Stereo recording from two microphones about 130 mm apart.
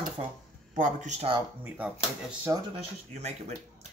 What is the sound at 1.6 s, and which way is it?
Speech, 10° right (ahead or behind).